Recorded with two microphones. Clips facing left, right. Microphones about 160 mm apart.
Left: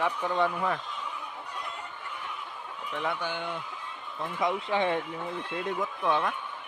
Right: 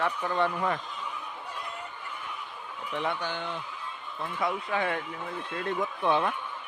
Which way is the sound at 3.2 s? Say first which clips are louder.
Even; 10° left (ahead or behind).